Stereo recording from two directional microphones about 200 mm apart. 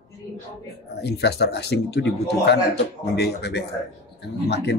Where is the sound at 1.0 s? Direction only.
55° left (ahead or behind).